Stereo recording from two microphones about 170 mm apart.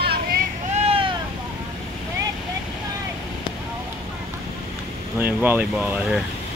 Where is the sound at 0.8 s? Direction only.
35° right (ahead or behind).